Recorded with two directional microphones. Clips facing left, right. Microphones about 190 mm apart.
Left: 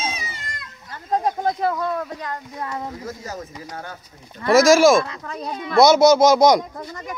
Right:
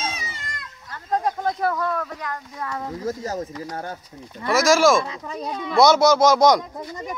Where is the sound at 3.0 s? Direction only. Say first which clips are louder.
Right 5 dB; 45° right (ahead or behind).